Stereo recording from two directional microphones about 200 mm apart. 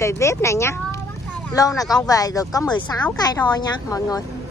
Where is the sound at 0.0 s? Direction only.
15° left (ahead or behind).